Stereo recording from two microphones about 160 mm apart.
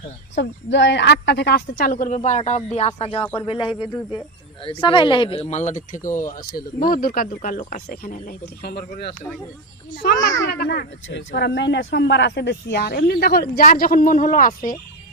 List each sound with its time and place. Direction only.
0.3 s a woman's voice: 90° left
9.9 s a child's voice: 90° left; by 14.8 s 55° left (ahead or behind)